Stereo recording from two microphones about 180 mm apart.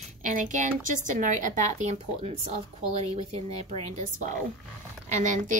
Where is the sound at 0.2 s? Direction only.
40° right (ahead or behind).